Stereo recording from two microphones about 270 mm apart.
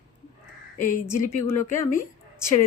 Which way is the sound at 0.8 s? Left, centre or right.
Left.